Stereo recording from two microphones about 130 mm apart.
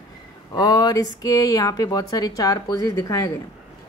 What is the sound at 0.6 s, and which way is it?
Speech, 30° left (ahead or behind).